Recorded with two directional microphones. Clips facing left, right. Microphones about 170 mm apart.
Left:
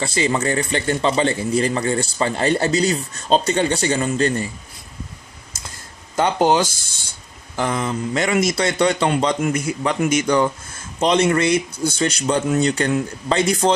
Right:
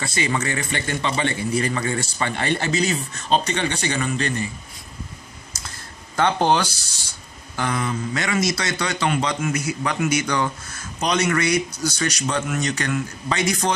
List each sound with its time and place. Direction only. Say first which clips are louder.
0.0 s speech: left 4 dB; 30° left (ahead or behind)
6.1 s speech: left 2 dB; 15° left (ahead or behind)
6.7 s speech: even; 50° left (ahead or behind)
7.5 s a man's voice: left 3 dB; 25° left (ahead or behind)